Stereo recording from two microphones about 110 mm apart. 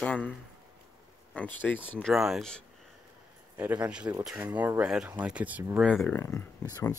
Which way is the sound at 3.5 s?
15° right (ahead or behind).